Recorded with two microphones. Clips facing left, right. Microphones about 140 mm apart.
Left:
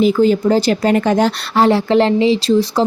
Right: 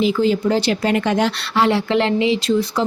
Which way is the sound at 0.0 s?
45° left (ahead or behind).